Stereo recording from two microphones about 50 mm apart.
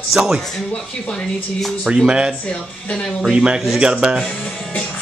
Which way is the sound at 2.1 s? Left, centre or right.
Centre.